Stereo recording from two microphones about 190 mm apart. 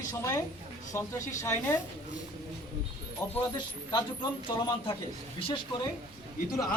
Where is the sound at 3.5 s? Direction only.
25° left (ahead or behind).